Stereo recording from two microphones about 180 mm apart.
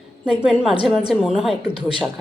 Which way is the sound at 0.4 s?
5° right (ahead or behind).